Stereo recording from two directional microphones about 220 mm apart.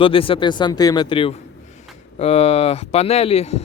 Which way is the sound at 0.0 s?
25° left (ahead or behind).